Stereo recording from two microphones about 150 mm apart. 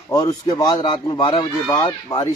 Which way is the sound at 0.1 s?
25° left (ahead or behind).